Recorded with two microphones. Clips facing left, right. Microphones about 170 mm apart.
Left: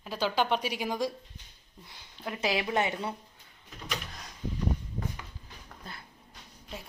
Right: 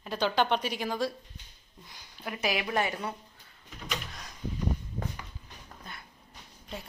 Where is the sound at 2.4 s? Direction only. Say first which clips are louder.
Left 1 dB; 25° left (ahead or behind).